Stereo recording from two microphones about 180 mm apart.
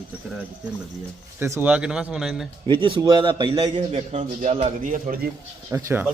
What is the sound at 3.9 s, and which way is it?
A man's voice, 40° right (ahead or behind).